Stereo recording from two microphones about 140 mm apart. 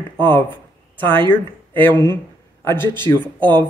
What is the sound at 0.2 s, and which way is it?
Speech, 15° left (ahead or behind).